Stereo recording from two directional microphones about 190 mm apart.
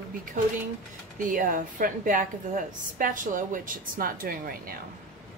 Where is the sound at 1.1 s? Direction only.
45° right (ahead or behind).